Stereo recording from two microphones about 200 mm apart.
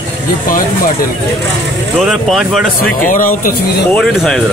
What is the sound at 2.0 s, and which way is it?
Speech, centre (ahead or behind).